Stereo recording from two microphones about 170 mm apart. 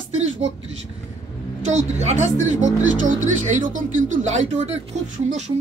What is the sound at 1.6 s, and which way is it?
Speech, 40° right (ahead or behind).